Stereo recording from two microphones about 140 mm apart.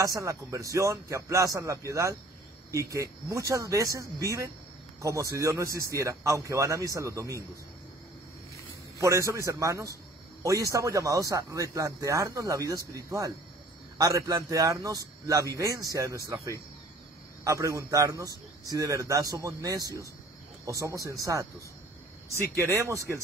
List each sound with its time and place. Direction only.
0.0 s speech: 20° right (ahead or behind)
9.0 s speech: 20° right (ahead or behind)
17.5 s speech: 25° right (ahead or behind)